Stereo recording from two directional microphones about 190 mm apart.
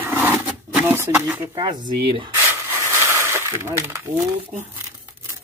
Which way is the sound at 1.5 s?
20° right (ahead or behind).